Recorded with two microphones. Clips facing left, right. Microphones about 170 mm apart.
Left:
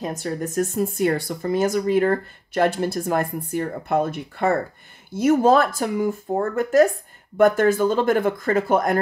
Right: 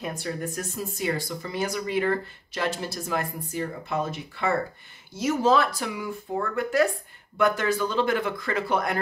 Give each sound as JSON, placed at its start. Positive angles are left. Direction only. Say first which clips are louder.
{"t": 0.0, "sound": "speech", "louder": "left 4 dB", "side_deg": 45}